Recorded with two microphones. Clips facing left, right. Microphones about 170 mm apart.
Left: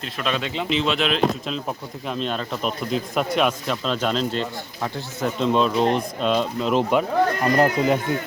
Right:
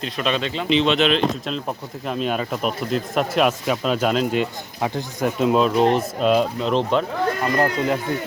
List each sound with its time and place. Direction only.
0.0 s speech: centre (ahead or behind)
0.4 s speech: 15° left (ahead or behind)
0.7 s speech: 5° left (ahead or behind)
7.5 s speech: 20° left (ahead or behind)